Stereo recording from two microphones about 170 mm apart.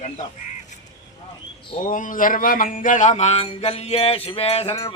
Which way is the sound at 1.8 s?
50° left (ahead or behind).